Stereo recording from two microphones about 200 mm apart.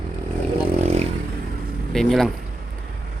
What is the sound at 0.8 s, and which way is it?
Vehicle, 35° right (ahead or behind).